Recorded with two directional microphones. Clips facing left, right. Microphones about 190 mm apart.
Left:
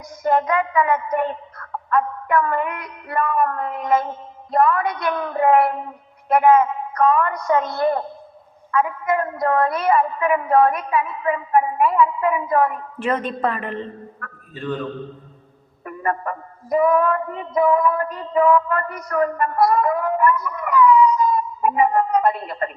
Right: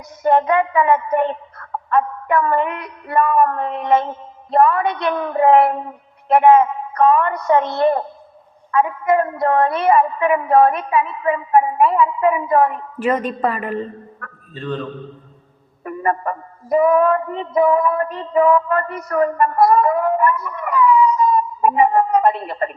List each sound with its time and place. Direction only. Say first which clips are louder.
0.2 s a woman's voice: right 4 dB; 25° right (ahead or behind)
1.1 s music: right 4 dB; 25° right (ahead or behind)
13.0 s a woman's voice: right 3 dB; 5° right (ahead or behind)
14.5 s a man's voice: right 1 dB; 10° left (ahead or behind)
15.8 s music: right 4 dB; 30° right (ahead or behind)